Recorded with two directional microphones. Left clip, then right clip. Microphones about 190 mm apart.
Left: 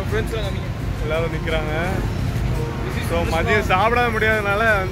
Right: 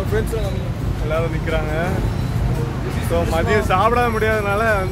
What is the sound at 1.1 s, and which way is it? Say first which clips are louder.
Speech: right 1 dB; 25° left (ahead or behind).